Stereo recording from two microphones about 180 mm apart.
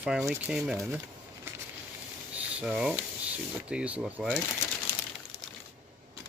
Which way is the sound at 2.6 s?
5° right (ahead or behind).